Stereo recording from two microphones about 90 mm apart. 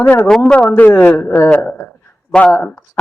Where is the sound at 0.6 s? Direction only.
20° left (ahead or behind).